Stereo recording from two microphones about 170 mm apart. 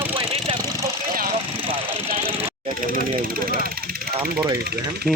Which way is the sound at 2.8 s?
55° right (ahead or behind).